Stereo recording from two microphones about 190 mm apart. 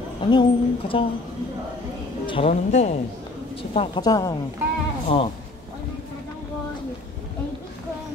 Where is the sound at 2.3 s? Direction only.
30° left (ahead or behind).